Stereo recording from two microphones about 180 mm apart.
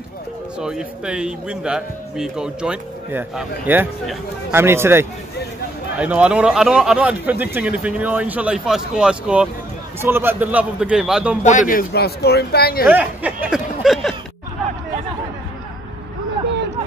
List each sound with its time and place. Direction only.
0.6 s speech: 5° right (ahead or behind)
11.4 s speech: 45° left (ahead or behind)
12.8 s speech: 10° right (ahead or behind)